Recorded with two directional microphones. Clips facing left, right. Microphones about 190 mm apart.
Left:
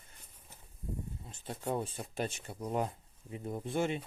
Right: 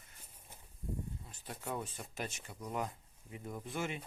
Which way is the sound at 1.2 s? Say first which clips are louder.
Left 9 dB; 25° left (ahead or behind).